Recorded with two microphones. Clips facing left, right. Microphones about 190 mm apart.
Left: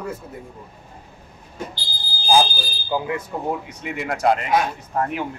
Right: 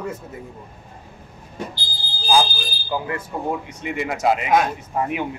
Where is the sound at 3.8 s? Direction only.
Centre (ahead or behind).